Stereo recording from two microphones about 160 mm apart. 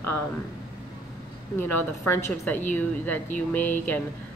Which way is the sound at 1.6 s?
15° left (ahead or behind).